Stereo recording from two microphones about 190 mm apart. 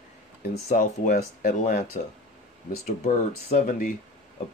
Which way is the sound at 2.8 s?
35° left (ahead or behind).